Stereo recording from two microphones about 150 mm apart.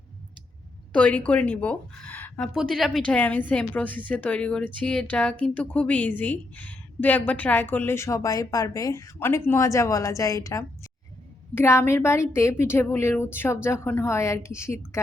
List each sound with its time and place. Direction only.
0.9 s a woman's voice: 10° left (ahead or behind)
2.6 s a woman's voice: centre (ahead or behind); by 15.0 s 20° left (ahead or behind)